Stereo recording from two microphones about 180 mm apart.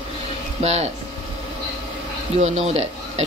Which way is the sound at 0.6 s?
35° right (ahead or behind).